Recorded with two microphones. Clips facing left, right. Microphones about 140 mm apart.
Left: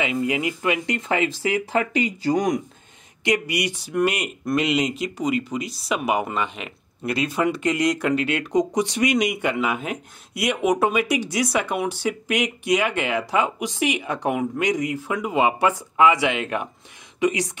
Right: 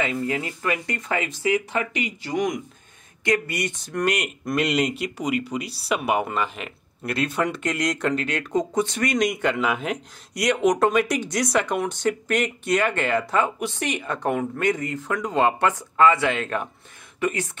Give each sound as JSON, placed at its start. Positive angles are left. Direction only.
{"t": 0.0, "sound": "speech", "side_deg": 15}
{"t": 3.3, "sound": "speech", "side_deg": 15}